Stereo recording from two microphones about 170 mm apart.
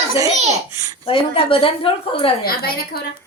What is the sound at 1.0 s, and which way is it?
A woman's voice, 35° left (ahead or behind).